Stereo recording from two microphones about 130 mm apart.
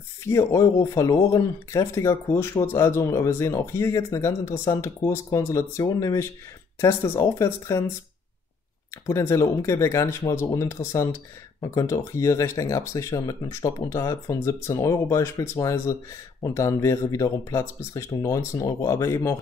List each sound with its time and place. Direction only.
0.3 s speech: 25° left (ahead or behind)
9.0 s speech: 20° left (ahead or behind)